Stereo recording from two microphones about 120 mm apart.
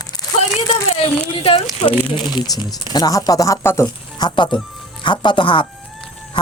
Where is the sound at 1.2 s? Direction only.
50° left (ahead or behind).